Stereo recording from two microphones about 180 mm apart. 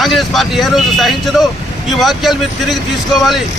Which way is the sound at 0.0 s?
Centre (ahead or behind).